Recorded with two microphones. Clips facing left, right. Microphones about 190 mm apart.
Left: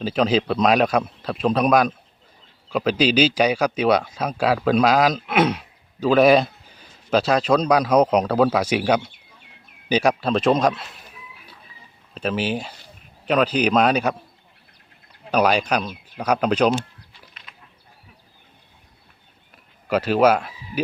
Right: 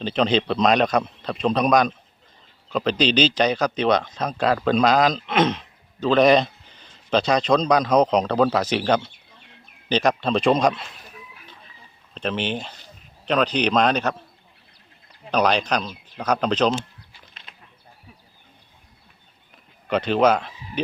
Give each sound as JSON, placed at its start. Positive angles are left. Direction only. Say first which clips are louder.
{"t": 0.0, "sound": "a man's voice", "louder": "left 1 dB", "side_deg": 5}
{"t": 12.1, "sound": "speech", "louder": "left 2 dB", "side_deg": 5}
{"t": 15.3, "sound": "speech", "louder": "left 2 dB", "side_deg": 10}
{"t": 17.5, "sound": "a sound", "louder": "right 1 dB", "side_deg": -25}
{"t": 19.9, "sound": "speech", "louder": "left 1 dB", "side_deg": 5}